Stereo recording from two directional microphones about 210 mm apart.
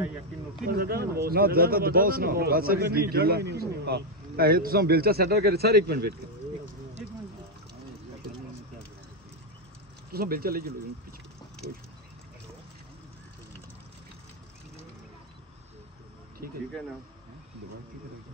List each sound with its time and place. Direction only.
0.7 s a man's voice: 45° right (ahead or behind)
10.1 s a man's voice: 45° right (ahead or behind)